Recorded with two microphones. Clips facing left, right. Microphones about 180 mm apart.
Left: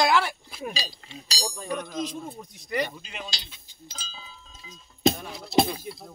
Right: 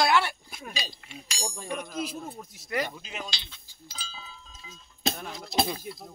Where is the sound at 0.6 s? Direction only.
30° left (ahead or behind).